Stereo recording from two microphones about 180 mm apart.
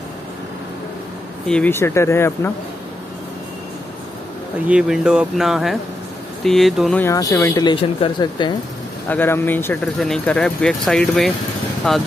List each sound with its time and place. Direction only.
1.5 s speech: 10° left (ahead or behind)
4.6 s speech: 5° right (ahead or behind)
7.1 s speech: 20° left (ahead or behind)
9.1 s speech: 10° left (ahead or behind)